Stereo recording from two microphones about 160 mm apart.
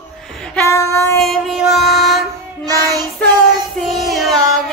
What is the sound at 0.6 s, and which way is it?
Female singing, 20° left (ahead or behind).